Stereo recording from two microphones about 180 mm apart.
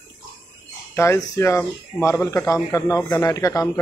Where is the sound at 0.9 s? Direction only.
15° left (ahead or behind).